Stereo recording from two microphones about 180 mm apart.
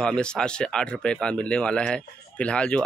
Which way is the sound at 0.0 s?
5° left (ahead or behind).